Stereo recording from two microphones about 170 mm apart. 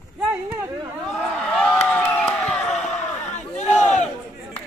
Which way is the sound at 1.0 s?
5° left (ahead or behind).